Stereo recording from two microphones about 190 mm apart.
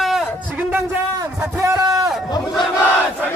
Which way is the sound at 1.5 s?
15° right (ahead or behind).